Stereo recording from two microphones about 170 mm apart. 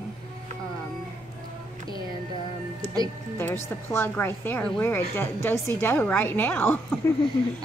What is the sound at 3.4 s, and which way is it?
A woman's voice, 15° left (ahead or behind).